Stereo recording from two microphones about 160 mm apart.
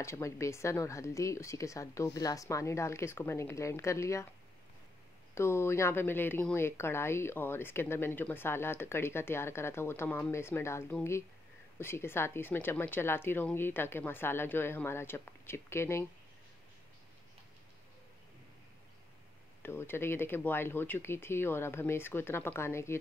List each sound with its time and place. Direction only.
0.0 s speech: 15° left (ahead or behind)
5.3 s speech: 15° left (ahead or behind)
19.6 s speech: 15° left (ahead or behind)